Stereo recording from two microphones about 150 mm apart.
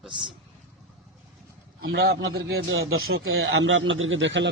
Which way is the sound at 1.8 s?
90° right.